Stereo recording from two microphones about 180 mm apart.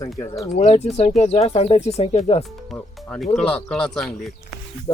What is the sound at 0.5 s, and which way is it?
Speech, 35° left (ahead or behind).